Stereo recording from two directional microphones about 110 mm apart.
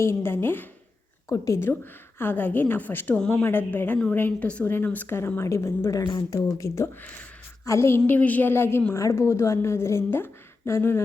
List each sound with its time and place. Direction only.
0.0 s a woman's voice: 25° left (ahead or behind)
7.0 s a woman's voice: 15° left (ahead or behind)
7.6 s a woman's voice: 25° left (ahead or behind)